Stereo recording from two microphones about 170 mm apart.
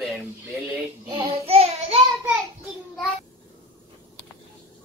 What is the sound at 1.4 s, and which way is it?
Child singing, 35° right (ahead or behind).